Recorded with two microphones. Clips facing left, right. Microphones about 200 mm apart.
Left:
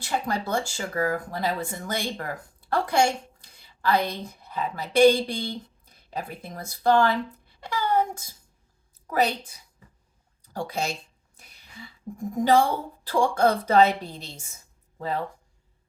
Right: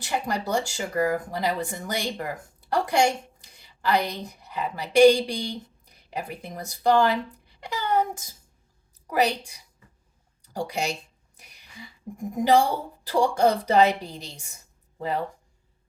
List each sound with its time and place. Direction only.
0.0 s a woman's voice: 15° right (ahead or behind)
10.5 s a woman's voice: 15° right (ahead or behind)
11.3 s a sound: 15° right (ahead or behind)
13.1 s a woman's voice: 15° right (ahead or behind)